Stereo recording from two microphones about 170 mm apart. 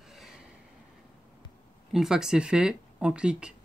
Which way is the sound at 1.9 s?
5° right (ahead or behind).